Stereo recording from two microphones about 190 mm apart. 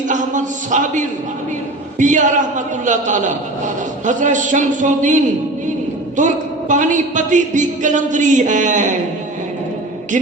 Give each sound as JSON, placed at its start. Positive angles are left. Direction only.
{"t": 0.1, "sound": "a woman's voice", "side_deg": -40}